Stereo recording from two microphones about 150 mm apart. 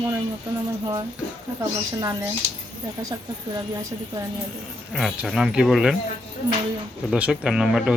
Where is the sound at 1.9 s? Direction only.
20° right (ahead or behind).